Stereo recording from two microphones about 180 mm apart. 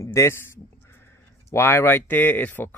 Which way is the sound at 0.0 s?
15° left (ahead or behind).